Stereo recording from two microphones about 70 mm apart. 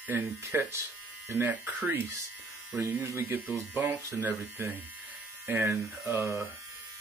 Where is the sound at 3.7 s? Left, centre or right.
Right.